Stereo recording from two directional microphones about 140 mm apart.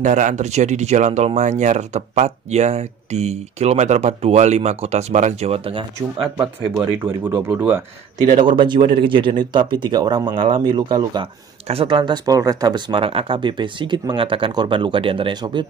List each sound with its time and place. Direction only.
0.0 s speech: 65° right (ahead or behind); by 6.2 s 40° right (ahead or behind)
7.2 s speech: 10° right (ahead or behind)
8.4 s speech: 35° right (ahead or behind)
11.6 s speech: 40° right (ahead or behind)